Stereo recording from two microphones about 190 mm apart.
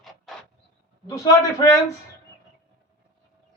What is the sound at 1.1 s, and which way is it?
Speech, 15° left (ahead or behind).